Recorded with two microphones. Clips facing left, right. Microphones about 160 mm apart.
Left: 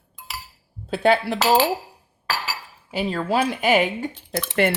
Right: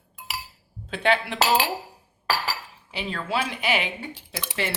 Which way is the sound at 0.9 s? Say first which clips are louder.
Left 5 dB; 40° left (ahead or behind).